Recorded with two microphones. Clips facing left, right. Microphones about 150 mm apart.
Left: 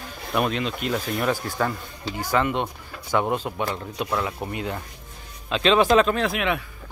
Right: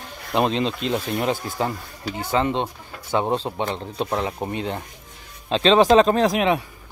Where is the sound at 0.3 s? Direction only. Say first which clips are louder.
Right 3 dB; 25° right (ahead or behind).